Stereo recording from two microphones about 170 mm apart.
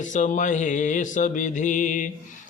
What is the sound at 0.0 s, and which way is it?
Mantra, 50° left (ahead or behind).